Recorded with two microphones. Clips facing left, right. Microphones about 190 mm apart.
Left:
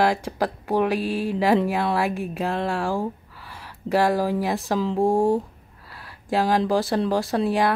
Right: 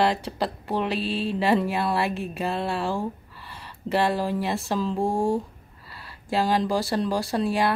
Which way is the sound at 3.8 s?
15° left (ahead or behind).